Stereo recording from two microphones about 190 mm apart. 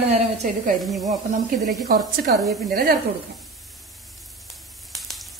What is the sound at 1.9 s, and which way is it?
Stir, 50° right (ahead or behind).